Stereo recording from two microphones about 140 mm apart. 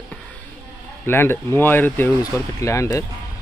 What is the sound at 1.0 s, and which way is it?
Speech, 15° left (ahead or behind).